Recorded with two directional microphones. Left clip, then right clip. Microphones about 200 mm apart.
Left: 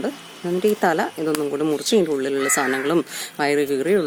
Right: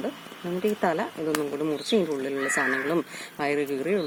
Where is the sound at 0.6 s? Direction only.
30° left (ahead or behind).